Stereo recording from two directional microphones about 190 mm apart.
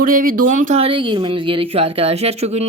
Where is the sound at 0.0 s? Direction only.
45° right (ahead or behind).